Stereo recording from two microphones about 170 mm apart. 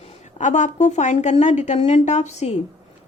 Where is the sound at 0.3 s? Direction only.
45° left (ahead or behind).